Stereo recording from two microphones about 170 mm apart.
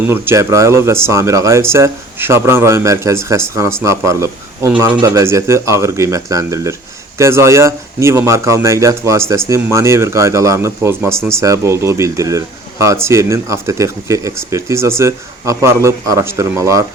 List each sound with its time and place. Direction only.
0.1 s speech: 15° right (ahead or behind)